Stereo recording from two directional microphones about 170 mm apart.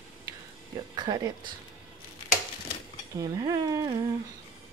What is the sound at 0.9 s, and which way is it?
Speech, 25° right (ahead or behind).